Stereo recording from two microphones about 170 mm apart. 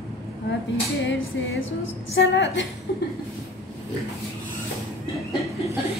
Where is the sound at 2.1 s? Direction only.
90° left.